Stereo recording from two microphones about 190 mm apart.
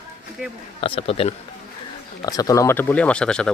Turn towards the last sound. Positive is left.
turn(degrees=5)  # may be behind; listen again after turning